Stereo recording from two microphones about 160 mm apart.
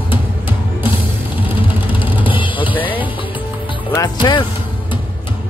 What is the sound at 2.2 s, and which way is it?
Music, 30° left (ahead or behind).